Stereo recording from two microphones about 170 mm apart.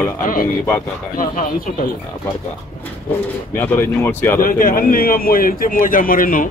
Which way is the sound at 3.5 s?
15° left (ahead or behind).